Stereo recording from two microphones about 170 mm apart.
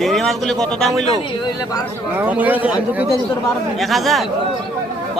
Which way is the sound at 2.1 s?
10° right (ahead or behind).